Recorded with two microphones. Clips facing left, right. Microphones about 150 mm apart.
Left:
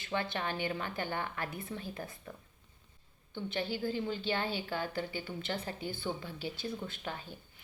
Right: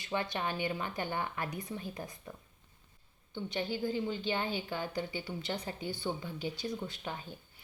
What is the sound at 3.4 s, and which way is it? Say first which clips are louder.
A woman's voice: right 1 dB; 15° right (ahead or behind).